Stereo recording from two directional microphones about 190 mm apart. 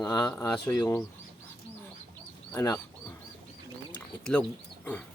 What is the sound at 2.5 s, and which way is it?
Speech, 15° left (ahead or behind).